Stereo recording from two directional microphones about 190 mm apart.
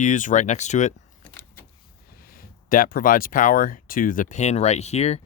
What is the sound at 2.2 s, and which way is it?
Speech, 50° left (ahead or behind).